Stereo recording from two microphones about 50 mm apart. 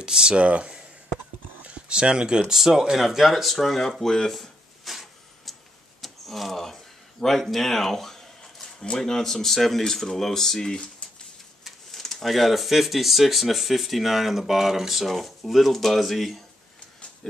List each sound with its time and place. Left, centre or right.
0.0 s speech: centre
4.0 s a sound: centre
8.8 s speech: centre